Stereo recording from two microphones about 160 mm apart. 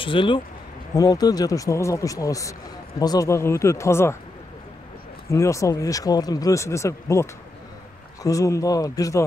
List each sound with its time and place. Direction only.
0.0 s speech: 30° left (ahead or behind); by 4.2 s 15° left (ahead or behind)
5.3 s speech: 20° left (ahead or behind)